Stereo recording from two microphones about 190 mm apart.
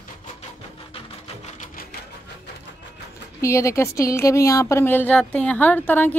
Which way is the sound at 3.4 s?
15° left (ahead or behind).